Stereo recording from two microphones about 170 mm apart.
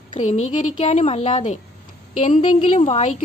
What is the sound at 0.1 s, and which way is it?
A woman's voice, 45° left (ahead or behind).